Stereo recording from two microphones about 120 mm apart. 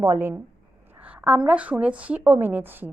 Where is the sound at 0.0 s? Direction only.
20° right (ahead or behind).